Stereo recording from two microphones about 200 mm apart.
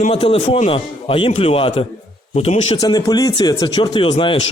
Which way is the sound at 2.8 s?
20° left (ahead or behind).